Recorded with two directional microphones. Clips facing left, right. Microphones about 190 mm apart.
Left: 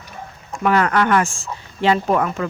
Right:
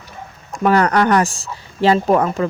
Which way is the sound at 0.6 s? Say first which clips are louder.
Right 3 dB; 40° right (ahead or behind).